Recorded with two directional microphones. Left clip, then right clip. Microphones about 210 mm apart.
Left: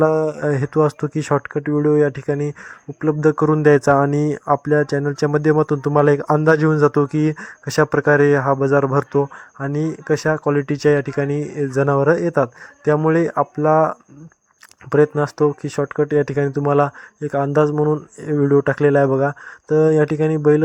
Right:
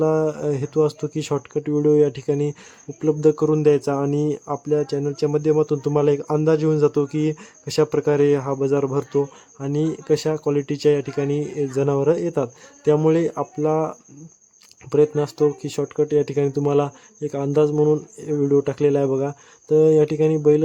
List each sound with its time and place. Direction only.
0.0 s speech: 20° left (ahead or behind)
18.2 s speech: 15° left (ahead or behind)